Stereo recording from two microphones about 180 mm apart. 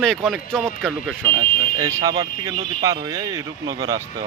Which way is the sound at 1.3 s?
20° right (ahead or behind).